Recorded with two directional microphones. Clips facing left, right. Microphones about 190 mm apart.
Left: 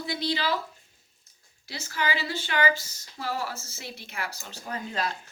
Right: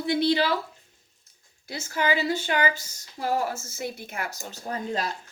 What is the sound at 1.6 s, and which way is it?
Speech, 50° right (ahead or behind).